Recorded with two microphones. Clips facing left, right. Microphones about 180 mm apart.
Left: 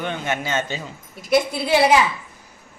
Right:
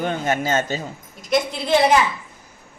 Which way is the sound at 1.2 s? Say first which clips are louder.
Left 2 dB; 5° left (ahead or behind).